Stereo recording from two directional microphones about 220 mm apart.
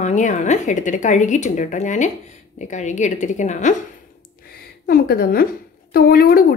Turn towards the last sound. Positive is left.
turn(degrees=45)  # may be behind; listen again after turning